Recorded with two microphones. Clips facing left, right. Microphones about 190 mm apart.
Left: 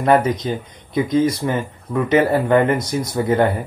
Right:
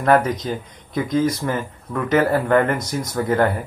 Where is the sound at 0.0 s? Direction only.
20° left (ahead or behind).